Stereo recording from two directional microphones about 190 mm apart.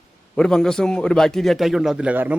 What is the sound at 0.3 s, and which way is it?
A man's voice, 5° left (ahead or behind).